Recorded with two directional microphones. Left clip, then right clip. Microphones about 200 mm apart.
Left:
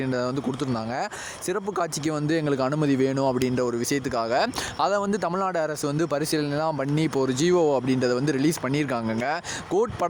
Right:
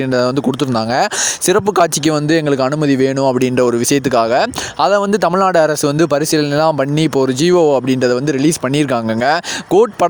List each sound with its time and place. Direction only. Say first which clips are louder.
0.1 s speech: right 12 dB; 40° right (ahead or behind)